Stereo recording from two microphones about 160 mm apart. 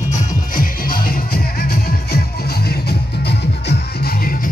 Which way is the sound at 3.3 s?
80° left.